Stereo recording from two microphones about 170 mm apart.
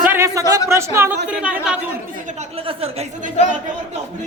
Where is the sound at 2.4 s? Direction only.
35° right (ahead or behind).